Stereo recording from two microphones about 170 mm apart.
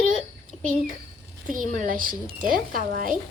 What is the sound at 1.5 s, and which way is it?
A woman's voice, 50° right (ahead or behind).